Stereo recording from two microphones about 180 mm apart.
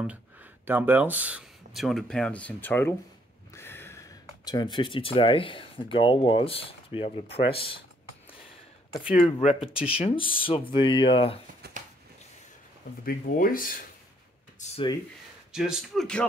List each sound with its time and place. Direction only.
0.0 s speech: 10° right (ahead or behind); by 7.8 s 30° left (ahead or behind)
8.3 s a sound: 30° left (ahead or behind)
9.2 s speech: 35° left (ahead or behind)
11.6 s a sound: 65° right (ahead or behind)
13.0 s speech: 50° left (ahead or behind)
15.5 s speech: 5° right (ahead or behind)